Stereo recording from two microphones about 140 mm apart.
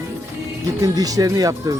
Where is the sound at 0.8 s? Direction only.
25° right (ahead or behind).